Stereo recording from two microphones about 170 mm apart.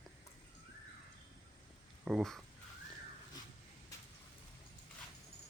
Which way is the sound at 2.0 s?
Centre (ahead or behind).